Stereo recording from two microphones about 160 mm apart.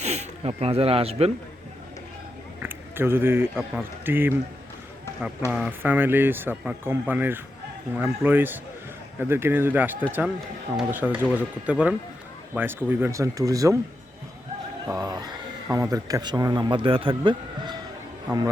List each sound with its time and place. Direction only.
0.0 s speech: 40° right (ahead or behind)
2.6 s a man's voice: 15° right (ahead or behind)
5.5 s a man's voice: 10° right (ahead or behind)
14.8 s a man's voice: 20° right (ahead or behind)